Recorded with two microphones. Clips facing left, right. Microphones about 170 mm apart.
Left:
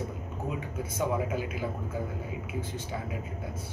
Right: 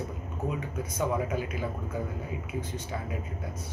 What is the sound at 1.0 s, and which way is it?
Speech, 5° left (ahead or behind).